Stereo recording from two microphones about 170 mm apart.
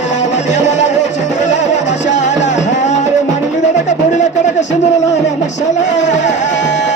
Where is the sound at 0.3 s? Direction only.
45° left (ahead or behind).